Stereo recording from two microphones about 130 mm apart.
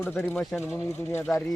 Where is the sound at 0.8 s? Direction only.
20° left (ahead or behind).